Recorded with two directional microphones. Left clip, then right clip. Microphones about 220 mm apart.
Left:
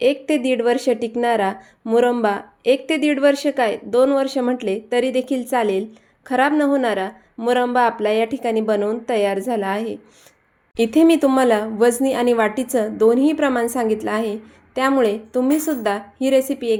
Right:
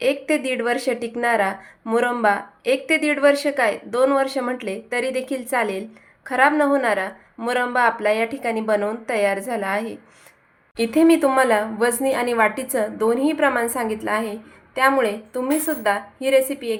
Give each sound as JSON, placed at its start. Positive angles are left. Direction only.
{"t": 0.0, "sound": "speech", "side_deg": 35}